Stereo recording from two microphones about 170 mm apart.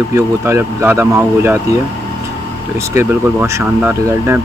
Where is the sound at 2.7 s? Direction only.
15° right (ahead or behind).